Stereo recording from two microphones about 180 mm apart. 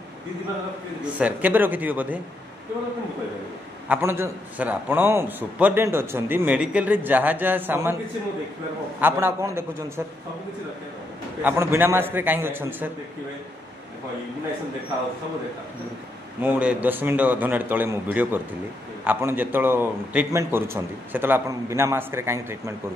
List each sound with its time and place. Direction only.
1.1 s a man's voice: 10° right (ahead or behind)
3.9 s a man's voice: 15° right (ahead or behind)
9.0 s a man's voice: 15° right (ahead or behind)
11.4 s a man's voice: 15° right (ahead or behind)
16.3 s a man's voice: 10° right (ahead or behind)